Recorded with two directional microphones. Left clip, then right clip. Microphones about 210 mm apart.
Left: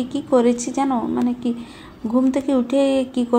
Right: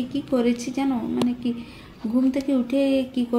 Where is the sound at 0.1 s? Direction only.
5° left (ahead or behind).